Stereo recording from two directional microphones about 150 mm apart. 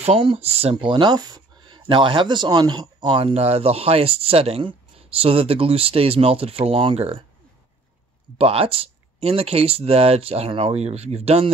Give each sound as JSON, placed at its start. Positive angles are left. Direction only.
{"t": 0.0, "sound": "speech", "side_deg": -40}
{"t": 8.4, "sound": "speech", "side_deg": -40}